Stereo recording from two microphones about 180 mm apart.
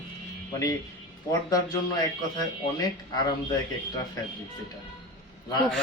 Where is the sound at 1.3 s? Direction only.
20° left (ahead or behind).